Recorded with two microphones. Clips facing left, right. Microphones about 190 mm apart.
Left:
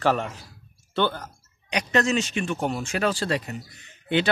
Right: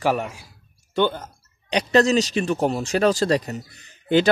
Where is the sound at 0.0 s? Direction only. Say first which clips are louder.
Right 1 dB; 10° right (ahead or behind).